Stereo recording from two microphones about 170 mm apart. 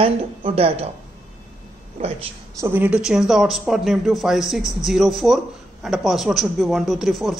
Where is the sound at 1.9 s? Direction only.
35° right (ahead or behind).